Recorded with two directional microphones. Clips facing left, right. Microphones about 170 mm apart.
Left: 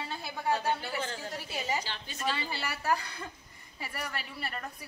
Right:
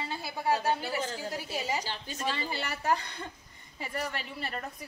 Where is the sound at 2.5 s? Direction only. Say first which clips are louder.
Right 1 dB; 20° right (ahead or behind).